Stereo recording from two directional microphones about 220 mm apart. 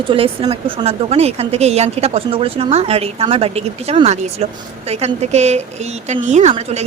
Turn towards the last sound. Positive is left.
turn(degrees=-30)  # may be behind; listen again after turning